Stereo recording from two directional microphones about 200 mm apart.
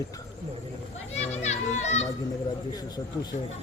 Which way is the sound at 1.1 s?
35° left (ahead or behind).